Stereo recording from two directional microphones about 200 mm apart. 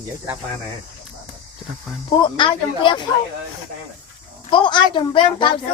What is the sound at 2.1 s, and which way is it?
Speech, 25° left (ahead or behind).